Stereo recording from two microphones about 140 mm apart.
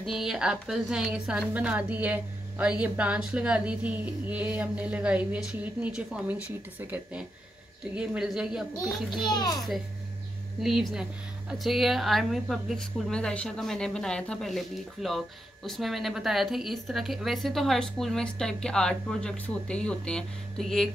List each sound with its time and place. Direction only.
0.0 s a woman's voice: centre (ahead or behind)
9.1 s a child's voice: 30° left (ahead or behind)
10.6 s speech: centre (ahead or behind)